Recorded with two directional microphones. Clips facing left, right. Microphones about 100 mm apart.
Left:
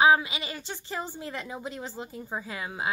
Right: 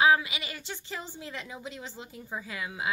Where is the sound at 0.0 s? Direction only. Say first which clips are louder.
Left 2 dB; 30° left (ahead or behind).